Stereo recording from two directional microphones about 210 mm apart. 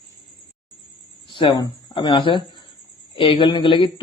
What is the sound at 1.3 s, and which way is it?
Speech, 20° left (ahead or behind).